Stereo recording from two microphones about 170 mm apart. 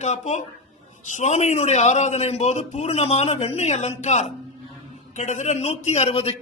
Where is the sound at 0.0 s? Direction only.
40° left (ahead or behind).